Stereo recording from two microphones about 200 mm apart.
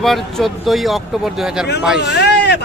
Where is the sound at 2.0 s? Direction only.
55° left (ahead or behind).